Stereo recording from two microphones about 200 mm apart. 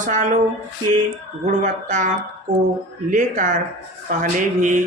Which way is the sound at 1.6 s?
40° right (ahead or behind).